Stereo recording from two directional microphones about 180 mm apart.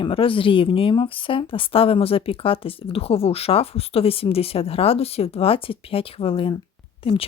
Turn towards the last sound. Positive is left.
turn(degrees=30)  # may be behind; listen again after turning